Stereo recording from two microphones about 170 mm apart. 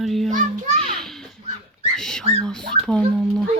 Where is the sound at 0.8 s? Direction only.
Centre (ahead or behind).